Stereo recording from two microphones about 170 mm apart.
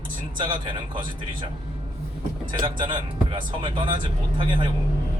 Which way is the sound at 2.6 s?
30° right (ahead or behind).